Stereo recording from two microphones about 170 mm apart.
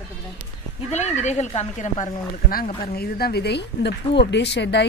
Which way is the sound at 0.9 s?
40° left (ahead or behind).